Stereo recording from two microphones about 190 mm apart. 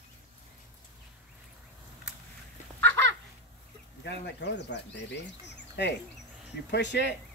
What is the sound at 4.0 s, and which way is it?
Speech, 65° left (ahead or behind).